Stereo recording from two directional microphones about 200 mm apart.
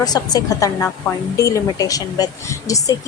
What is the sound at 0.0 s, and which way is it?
A woman's voice, 20° left (ahead or behind).